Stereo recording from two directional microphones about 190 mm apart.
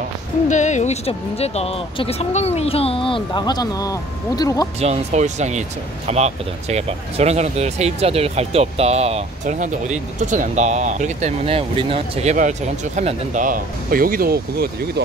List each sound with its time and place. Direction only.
0.5 s speech: 40° left (ahead or behind); by 4.6 s 20° left (ahead or behind)
4.7 s speech: 35° right (ahead or behind); by 14.7 s 55° right (ahead or behind)